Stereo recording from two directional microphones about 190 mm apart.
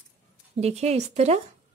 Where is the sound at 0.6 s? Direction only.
35° right (ahead or behind).